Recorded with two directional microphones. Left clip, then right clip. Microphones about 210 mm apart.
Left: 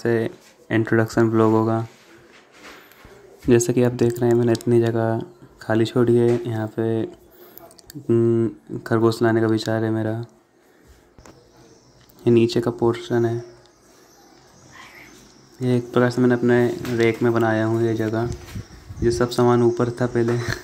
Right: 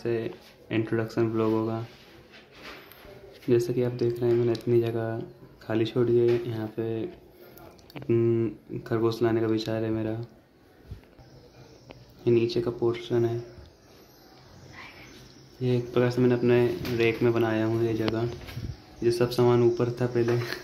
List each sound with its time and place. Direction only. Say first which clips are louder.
0.0 s speech: left 8 dB; 30° left (ahead or behind)
3.4 s speech: left 7 dB; 40° left (ahead or behind); by 8.5 s 20° left (ahead or behind)
8.8 s speech: left 7 dB; 30° left (ahead or behind)
12.3 s speech: left 6 dB; 35° left (ahead or behind)
15.6 s speech: left 6 dB; 30° left (ahead or behind)